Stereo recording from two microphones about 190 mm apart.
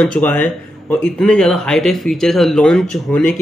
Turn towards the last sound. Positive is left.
turn(degrees=5)  # may be behind; listen again after turning